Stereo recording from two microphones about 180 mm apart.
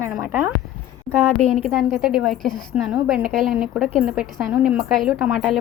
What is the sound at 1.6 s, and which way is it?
A woman's voice, centre (ahead or behind).